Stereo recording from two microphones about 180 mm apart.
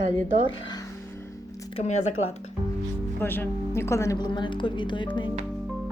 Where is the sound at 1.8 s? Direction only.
40° left (ahead or behind).